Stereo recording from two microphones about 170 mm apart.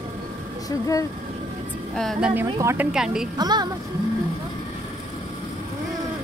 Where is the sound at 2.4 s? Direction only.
15° right (ahead or behind).